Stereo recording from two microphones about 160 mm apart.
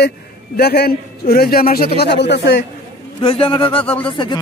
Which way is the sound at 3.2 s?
35° left (ahead or behind).